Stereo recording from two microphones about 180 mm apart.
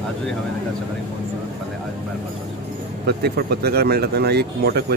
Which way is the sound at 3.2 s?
60° right (ahead or behind).